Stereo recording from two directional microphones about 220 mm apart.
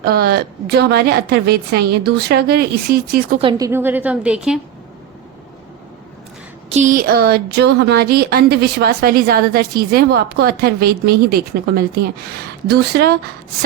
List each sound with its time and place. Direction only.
0.0 s speech: 45° right (ahead or behind)
3.4 s a woman's voice: 15° right (ahead or behind)
6.7 s speech: 35° right (ahead or behind)